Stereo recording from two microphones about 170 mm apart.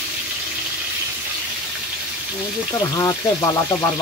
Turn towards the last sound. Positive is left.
turn(degrees=20)  # may be behind; listen again after turning